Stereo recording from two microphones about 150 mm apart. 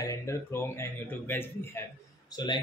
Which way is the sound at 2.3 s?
30° left (ahead or behind).